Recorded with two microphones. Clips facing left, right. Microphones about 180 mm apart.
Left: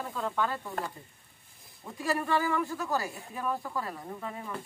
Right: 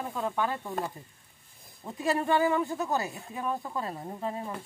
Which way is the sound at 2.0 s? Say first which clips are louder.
Right 3 dB; 20° right (ahead or behind).